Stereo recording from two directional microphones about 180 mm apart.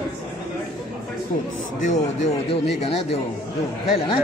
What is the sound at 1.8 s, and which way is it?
Speech, 40° left (ahead or behind).